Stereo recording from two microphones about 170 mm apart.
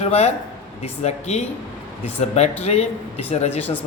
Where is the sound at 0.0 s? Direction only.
40° left (ahead or behind).